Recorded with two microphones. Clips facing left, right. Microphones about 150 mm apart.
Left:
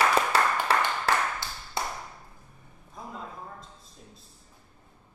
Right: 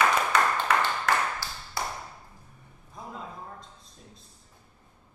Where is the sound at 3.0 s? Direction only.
Centre (ahead or behind).